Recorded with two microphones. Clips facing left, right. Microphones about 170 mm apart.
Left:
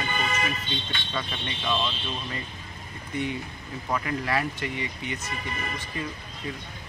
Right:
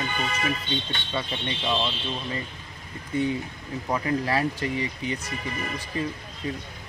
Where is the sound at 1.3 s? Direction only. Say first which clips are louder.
Right 2 dB; 20° right (ahead or behind).